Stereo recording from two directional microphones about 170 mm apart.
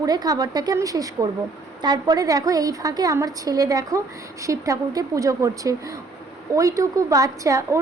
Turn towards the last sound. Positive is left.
turn(degrees=-20)  # may be behind; listen again after turning